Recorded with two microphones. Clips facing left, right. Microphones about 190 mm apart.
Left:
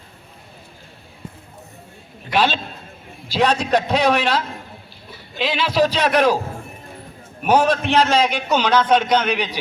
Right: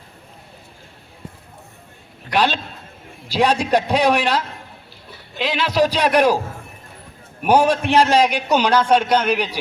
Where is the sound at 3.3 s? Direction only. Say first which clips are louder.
Right 1 dB; 10° right (ahead or behind).